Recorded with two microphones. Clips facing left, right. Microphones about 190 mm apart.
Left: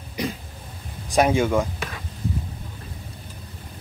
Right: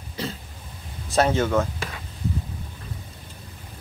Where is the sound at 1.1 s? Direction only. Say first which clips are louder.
Left 1 dB; 10° left (ahead or behind).